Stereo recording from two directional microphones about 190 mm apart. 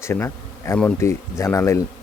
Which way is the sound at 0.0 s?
15° left (ahead or behind).